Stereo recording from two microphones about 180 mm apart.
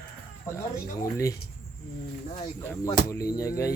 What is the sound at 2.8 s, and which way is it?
Music, 20° left (ahead or behind).